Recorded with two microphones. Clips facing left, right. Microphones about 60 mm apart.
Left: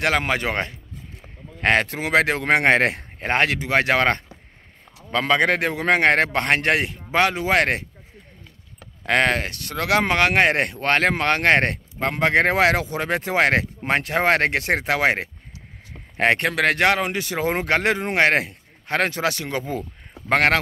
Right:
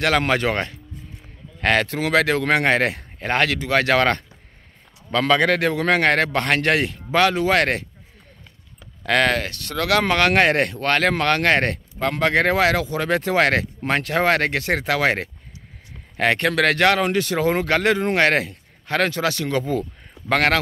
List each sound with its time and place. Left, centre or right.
0.0 s speech: centre
9.0 s speech: left
20.2 s speech: left